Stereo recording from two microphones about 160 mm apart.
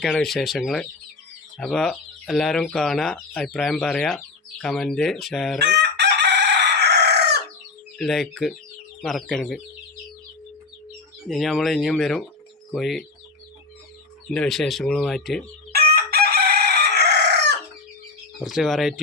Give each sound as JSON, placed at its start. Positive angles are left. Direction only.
{"t": 0.0, "sound": "speech", "side_deg": 0}
{"t": 5.6, "sound": "chicken", "side_deg": -90}
{"t": 7.9, "sound": "speech", "side_deg": 0}
{"t": 11.3, "sound": "speech", "side_deg": 0}
{"t": 14.3, "sound": "speech", "side_deg": 5}
{"t": 15.7, "sound": "chicken", "side_deg": -75}
{"t": 18.4, "sound": "speech", "side_deg": 0}